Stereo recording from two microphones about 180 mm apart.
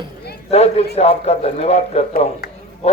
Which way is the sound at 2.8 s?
35° left (ahead or behind).